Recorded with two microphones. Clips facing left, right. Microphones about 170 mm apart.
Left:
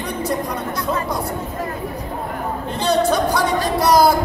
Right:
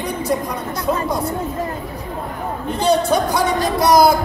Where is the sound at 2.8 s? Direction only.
15° right (ahead or behind).